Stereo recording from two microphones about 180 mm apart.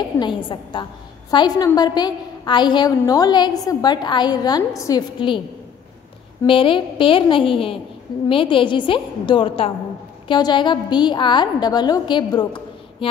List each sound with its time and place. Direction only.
0.2 s a woman's voice: 25° left (ahead or behind)
6.4 s a woman's voice: 30° left (ahead or behind)